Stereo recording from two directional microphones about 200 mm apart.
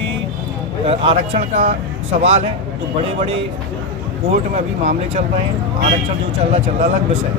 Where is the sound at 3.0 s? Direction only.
30° right (ahead or behind).